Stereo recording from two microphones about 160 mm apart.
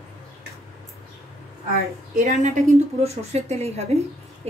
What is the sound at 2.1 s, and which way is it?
Speech, 50° right (ahead or behind).